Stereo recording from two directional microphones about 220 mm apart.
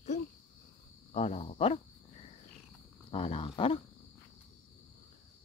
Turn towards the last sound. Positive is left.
turn(degrees=25)  # may be behind; listen again after turning